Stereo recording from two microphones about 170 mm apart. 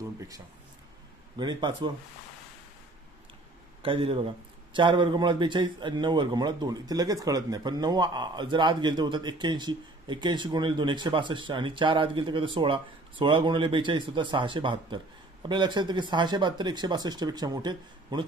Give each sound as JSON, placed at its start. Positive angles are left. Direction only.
{"t": 1.4, "sound": "a man's voice", "side_deg": -25}
{"t": 3.8, "sound": "a man's voice", "side_deg": -30}